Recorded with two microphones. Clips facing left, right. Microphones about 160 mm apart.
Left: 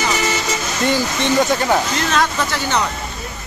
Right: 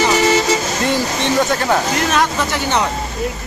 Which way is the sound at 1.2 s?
Centre (ahead or behind).